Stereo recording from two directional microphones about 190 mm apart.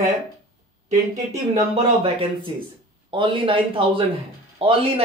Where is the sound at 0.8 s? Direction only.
40° right (ahead or behind).